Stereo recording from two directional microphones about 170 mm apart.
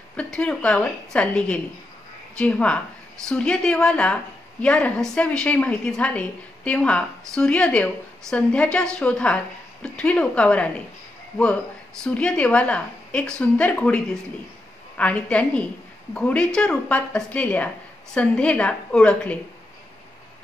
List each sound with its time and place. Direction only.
0.1 s a woman's voice: 5° left (ahead or behind)
12.0 s a woman's voice: 5° left (ahead or behind)